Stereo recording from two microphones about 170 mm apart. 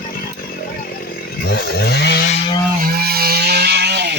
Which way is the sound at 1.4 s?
65° left (ahead or behind).